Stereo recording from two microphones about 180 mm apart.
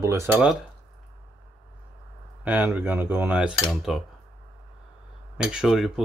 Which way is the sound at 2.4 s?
10° right (ahead or behind).